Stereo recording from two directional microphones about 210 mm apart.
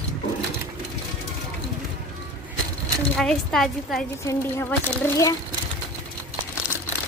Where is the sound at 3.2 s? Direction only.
Centre (ahead or behind).